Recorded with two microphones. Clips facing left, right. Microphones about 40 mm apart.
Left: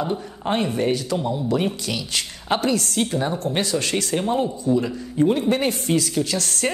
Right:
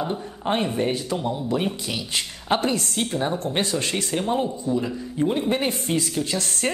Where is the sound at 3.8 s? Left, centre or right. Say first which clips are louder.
Left 2 dB; centre.